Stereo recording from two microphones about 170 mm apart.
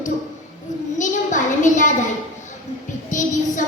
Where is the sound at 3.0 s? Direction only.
50° left (ahead or behind).